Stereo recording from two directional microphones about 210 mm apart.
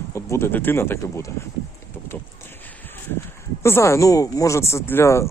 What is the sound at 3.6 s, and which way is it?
Speech, 10° left (ahead or behind).